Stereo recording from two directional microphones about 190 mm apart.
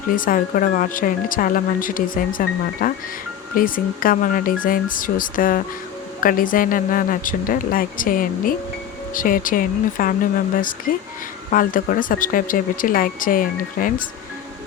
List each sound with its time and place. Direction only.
0.2 s speech: 45° left (ahead or behind)